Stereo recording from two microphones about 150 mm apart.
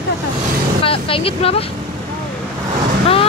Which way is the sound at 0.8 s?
35° left (ahead or behind).